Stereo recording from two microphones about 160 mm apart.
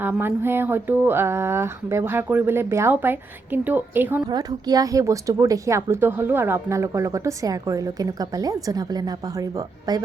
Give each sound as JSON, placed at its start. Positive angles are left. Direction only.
{"t": 0.0, "sound": "speech", "side_deg": -15}
{"t": 4.3, "sound": "a woman's voice", "side_deg": -25}